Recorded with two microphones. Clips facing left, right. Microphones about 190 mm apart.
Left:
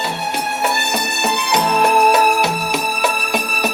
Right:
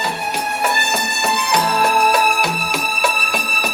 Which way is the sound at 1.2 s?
20° left (ahead or behind).